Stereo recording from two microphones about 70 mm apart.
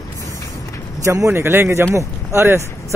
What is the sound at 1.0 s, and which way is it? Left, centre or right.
Speech, right.